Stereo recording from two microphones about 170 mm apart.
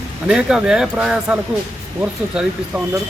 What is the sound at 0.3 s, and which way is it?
Speech, 5° right (ahead or behind).